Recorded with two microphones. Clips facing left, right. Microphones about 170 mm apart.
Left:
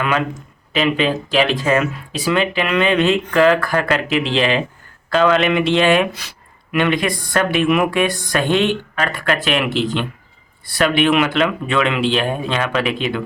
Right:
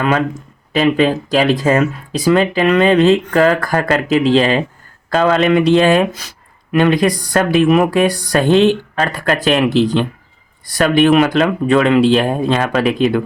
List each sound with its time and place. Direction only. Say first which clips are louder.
0.7 s speech: right 5 dB; 40° right (ahead or behind)